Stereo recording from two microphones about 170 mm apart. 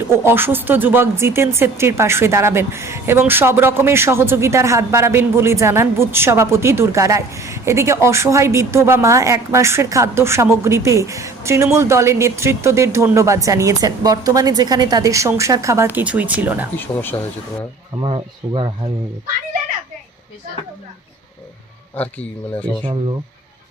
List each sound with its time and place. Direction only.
0.1 s speech: 10° right (ahead or behind)
16.7 s speech: 10° left (ahead or behind)
18.0 s speech: 30° right (ahead or behind)
22.0 s speech: 10° left (ahead or behind)